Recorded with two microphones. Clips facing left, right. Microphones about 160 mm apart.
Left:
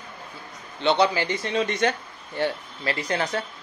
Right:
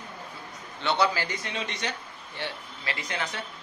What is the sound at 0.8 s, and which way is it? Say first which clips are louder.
Speech: left 5 dB; 20° left (ahead or behind).